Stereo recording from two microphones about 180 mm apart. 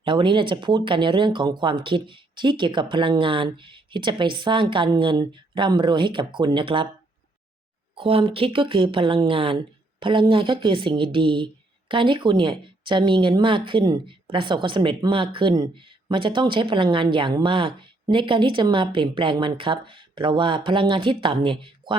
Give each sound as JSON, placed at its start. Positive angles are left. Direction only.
{"t": 0.0, "sound": "a woman's voice", "side_deg": -25}
{"t": 7.9, "sound": "a woman's voice", "side_deg": -30}